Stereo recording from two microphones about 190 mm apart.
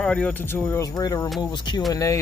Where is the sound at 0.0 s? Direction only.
5° left (ahead or behind).